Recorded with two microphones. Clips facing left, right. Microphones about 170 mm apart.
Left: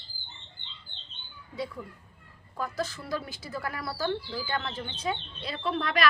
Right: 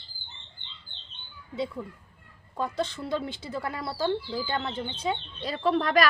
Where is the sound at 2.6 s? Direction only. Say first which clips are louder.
Right 3 dB; 30° right (ahead or behind).